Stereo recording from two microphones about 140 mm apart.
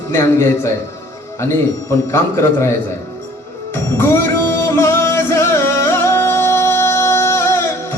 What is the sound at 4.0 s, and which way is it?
Music, 20° left (ahead or behind).